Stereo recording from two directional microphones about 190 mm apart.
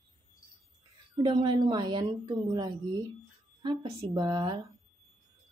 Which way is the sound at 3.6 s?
30° right (ahead or behind).